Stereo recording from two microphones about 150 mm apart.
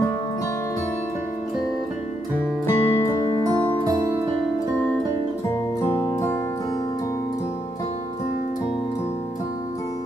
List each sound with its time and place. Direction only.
2.6 s music: 15° left (ahead or behind)
3.4 s music: 25° right (ahead or behind)
5.5 s music: 15° left (ahead or behind)